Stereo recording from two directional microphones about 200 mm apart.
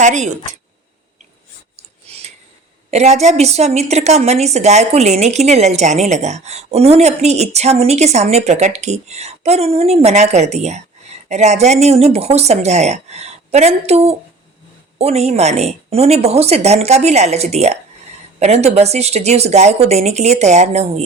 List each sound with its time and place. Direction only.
0.0 s a woman's voice: 40° right (ahead or behind)
1.7 s a sound: 30° right (ahead or behind)
2.9 s a woman's voice: 35° right (ahead or behind)